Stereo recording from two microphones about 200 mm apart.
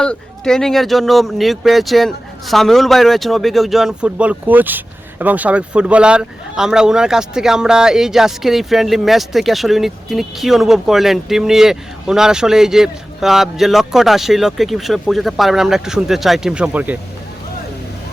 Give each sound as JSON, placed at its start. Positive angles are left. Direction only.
{"t": 0.0, "sound": "speech", "side_deg": 5}